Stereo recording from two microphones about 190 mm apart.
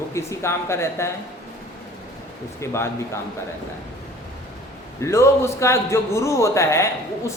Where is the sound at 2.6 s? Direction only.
15° left (ahead or behind).